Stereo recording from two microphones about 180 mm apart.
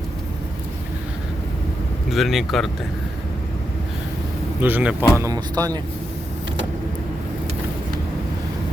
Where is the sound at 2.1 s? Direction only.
Centre (ahead or behind).